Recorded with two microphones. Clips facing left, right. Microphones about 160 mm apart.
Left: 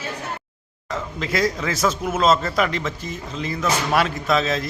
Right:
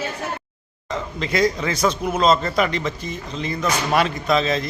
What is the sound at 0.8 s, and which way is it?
Speech, 5° left (ahead or behind).